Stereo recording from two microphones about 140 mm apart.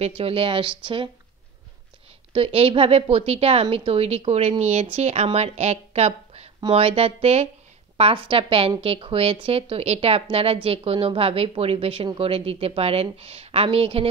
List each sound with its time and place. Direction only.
0.2 s a woman's voice: 40° right (ahead or behind)
2.3 s a woman's voice: 40° right (ahead or behind)